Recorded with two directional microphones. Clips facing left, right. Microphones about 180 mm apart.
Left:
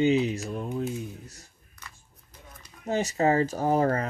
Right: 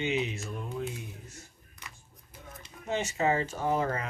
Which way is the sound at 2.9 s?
40° left (ahead or behind).